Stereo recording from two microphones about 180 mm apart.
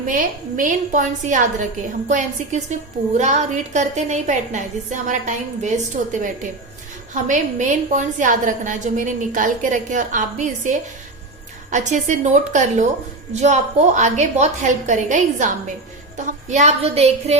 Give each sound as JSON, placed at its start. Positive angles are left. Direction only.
{"t": 0.1, "sound": "a woman's voice", "side_deg": -45}